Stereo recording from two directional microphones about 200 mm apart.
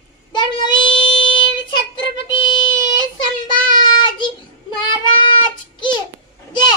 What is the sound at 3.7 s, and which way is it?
Child singing, 20° left (ahead or behind).